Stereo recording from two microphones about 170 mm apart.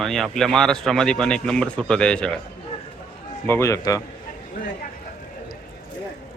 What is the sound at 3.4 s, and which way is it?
Speech, 15° left (ahead or behind).